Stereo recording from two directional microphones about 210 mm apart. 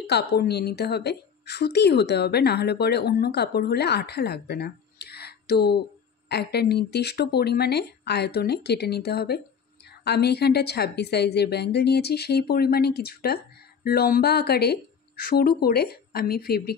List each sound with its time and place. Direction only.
0.0 s a woman's voice: 50° left (ahead or behind)